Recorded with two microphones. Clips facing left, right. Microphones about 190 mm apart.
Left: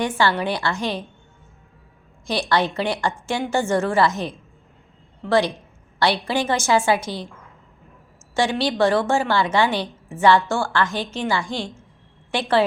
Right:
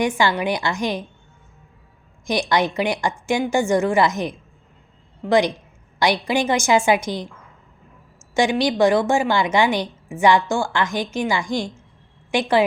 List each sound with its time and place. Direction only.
0.0 s a woman's voice: 15° right (ahead or behind)
2.2 s a woman's voice: 15° right (ahead or behind)
8.4 s a woman's voice: 15° right (ahead or behind)